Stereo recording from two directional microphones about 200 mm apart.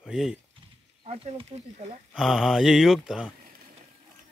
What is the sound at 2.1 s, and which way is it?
Speech, 5° right (ahead or behind).